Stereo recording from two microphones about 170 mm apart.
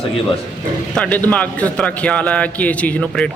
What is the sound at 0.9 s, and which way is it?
A man's voice, 10° left (ahead or behind).